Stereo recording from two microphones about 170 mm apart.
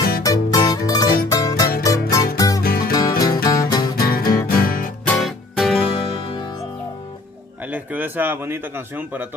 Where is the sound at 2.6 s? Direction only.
60° left (ahead or behind).